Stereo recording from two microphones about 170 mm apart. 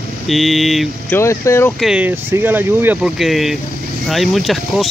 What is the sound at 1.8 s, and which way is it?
Speech, 5° right (ahead or behind).